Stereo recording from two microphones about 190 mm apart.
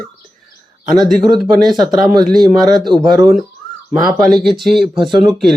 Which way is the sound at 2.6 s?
20° right (ahead or behind).